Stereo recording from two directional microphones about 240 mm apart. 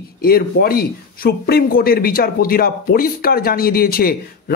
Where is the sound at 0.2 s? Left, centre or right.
Left.